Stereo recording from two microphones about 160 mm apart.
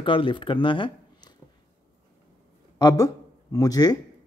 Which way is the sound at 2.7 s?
25° left (ahead or behind).